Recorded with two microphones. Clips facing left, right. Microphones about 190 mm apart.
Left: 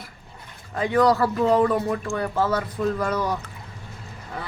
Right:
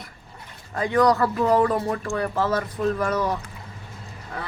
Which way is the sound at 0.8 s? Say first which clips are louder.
Even; 5° left (ahead or behind).